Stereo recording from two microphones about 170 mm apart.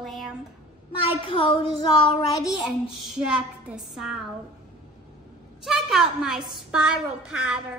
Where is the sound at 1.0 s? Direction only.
30° left (ahead or behind).